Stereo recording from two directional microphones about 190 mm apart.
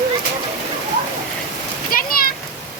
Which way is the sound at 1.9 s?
50° left (ahead or behind).